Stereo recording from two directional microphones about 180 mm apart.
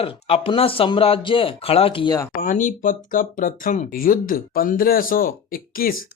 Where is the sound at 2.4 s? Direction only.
45° left (ahead or behind).